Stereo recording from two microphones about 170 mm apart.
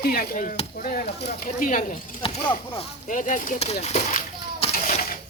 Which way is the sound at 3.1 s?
50° left (ahead or behind).